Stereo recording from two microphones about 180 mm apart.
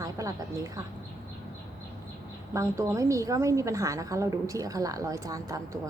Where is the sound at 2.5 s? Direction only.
15° right (ahead or behind).